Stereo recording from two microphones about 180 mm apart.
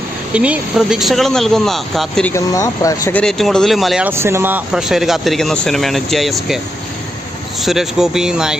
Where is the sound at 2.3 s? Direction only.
15° left (ahead or behind).